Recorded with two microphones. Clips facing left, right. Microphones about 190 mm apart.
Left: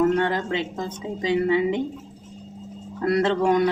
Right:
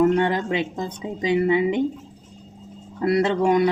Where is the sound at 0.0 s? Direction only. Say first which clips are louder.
Right 2 dB; 15° right (ahead or behind).